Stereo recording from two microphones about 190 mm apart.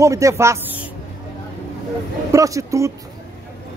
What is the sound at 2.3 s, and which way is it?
Speech, 15° right (ahead or behind).